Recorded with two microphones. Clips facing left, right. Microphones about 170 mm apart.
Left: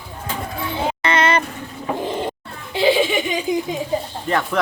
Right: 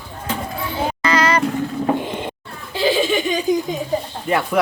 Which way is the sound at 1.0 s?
25° left (ahead or behind).